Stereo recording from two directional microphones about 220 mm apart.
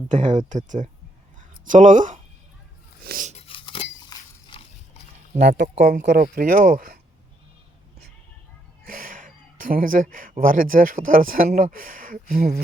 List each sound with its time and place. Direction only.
0.1 s speech: 35° right (ahead or behind)
1.4 s a sound: 35° right (ahead or behind)
3.1 s speech: 35° right (ahead or behind)
3.3 s a sound: 25° left (ahead or behind)
4.1 s chink: 15° left (ahead or behind)
5.3 s speech: 30° right (ahead or behind)
5.7 s speech: 50° right (ahead or behind)
8.8 s a sound: 40° right (ahead or behind)
10.4 s speech: 40° right (ahead or behind)